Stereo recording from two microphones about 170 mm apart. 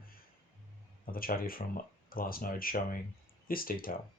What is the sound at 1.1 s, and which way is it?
Speech, 60° left (ahead or behind).